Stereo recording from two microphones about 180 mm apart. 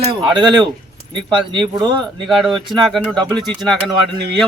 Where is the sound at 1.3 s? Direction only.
25° right (ahead or behind).